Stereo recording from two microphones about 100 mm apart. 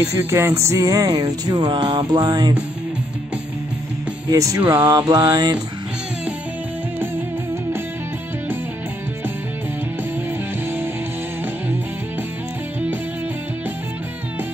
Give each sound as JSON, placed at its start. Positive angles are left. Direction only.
{"t": 0.0, "sound": "music", "side_deg": -25}
{"t": 1.2, "sound": "music", "side_deg": -45}
{"t": 4.3, "sound": "mantra", "side_deg": -35}